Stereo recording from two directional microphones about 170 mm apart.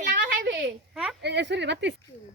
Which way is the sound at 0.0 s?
90° right.